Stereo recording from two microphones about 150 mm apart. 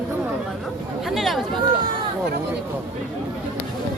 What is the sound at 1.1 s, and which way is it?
Speech, centre (ahead or behind).